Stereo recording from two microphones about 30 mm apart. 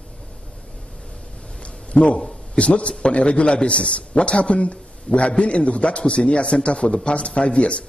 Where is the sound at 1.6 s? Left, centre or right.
Left.